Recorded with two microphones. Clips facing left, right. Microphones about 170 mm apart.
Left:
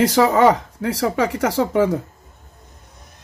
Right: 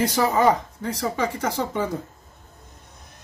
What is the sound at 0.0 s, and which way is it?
Speech, 75° left (ahead or behind).